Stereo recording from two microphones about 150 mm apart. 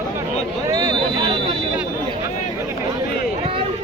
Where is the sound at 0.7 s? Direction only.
25° right (ahead or behind).